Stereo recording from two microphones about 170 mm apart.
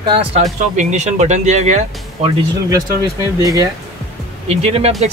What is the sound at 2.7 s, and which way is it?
Speech, 20° right (ahead or behind).